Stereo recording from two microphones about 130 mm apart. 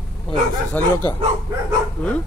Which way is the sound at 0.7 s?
15° left (ahead or behind).